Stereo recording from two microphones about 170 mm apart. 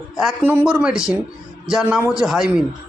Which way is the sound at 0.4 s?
10° right (ahead or behind).